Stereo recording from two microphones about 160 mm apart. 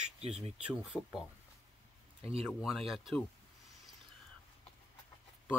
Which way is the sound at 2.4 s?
Centre (ahead or behind).